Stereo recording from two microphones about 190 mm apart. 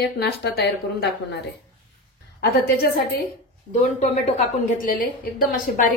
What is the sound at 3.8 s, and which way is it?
A woman's voice, 35° left (ahead or behind).